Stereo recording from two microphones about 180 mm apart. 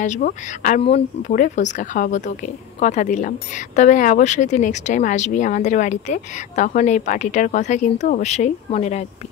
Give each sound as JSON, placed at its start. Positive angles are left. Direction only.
{"t": 0.0, "sound": "a woman's voice", "side_deg": 45}
{"t": 0.8, "sound": "speech", "side_deg": 35}
{"t": 1.3, "sound": "a woman's voice", "side_deg": 45}